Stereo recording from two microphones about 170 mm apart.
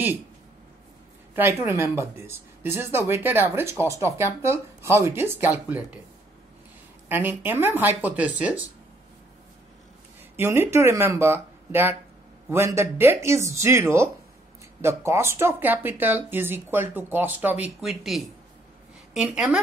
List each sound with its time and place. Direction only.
1.3 s speech: 10° right (ahead or behind)
7.1 s speech: 10° right (ahead or behind)
10.3 s speech: 15° right (ahead or behind)